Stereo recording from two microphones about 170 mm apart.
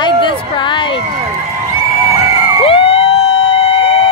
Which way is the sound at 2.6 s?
30° left (ahead or behind).